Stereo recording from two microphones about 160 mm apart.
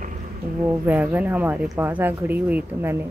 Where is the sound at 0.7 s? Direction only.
10° right (ahead or behind).